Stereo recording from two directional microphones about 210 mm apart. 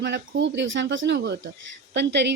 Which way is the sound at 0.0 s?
55° right (ahead or behind).